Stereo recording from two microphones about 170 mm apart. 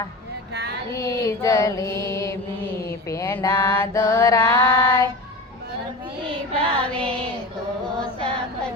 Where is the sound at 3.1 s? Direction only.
20° left (ahead or behind).